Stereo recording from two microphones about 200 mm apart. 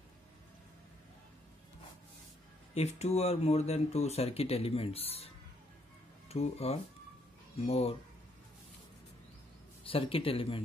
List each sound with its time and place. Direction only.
2.7 s speech: 35° left (ahead or behind)
9.8 s speech: 25° left (ahead or behind)